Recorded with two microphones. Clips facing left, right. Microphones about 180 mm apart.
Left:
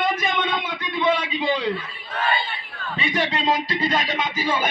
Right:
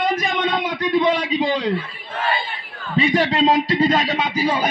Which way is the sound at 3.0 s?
40° right (ahead or behind).